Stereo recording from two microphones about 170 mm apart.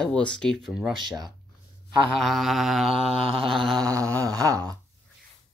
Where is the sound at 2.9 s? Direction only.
35° right (ahead or behind).